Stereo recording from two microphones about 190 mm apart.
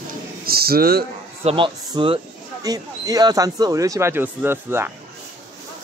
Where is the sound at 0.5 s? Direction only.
50° right (ahead or behind).